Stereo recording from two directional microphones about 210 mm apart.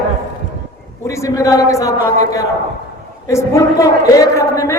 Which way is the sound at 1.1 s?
15° left (ahead or behind).